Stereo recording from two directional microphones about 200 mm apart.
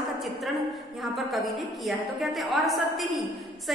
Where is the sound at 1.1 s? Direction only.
Centre (ahead or behind).